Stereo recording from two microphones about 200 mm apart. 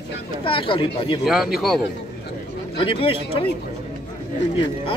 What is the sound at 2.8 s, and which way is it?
Speech, 25° left (ahead or behind).